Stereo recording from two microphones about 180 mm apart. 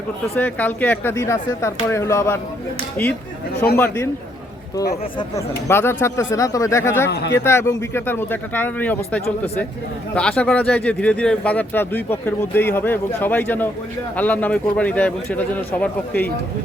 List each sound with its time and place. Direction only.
0.3 s speech: 10° left (ahead or behind)
3.8 s speech: 15° left (ahead or behind)
5.6 s speech: 15° left (ahead or behind)
7.1 s speech: 65° left (ahead or behind)
7.3 s speech: 15° left (ahead or behind)